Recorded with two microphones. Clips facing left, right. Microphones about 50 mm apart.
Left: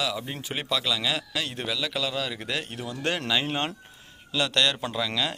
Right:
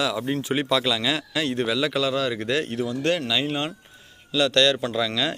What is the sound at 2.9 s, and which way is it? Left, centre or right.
Speech, centre.